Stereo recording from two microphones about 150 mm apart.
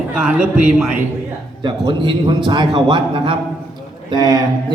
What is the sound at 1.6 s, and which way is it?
A man's voice, 30° right (ahead or behind).